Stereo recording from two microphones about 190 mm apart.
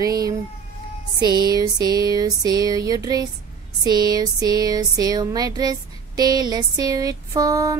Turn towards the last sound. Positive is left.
turn(degrees=-20)  # may be behind; listen again after turning